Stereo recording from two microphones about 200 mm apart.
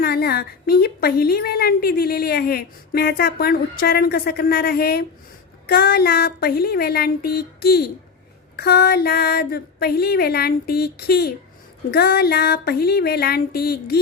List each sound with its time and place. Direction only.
0.0 s a woman's voice: 50° left (ahead or behind)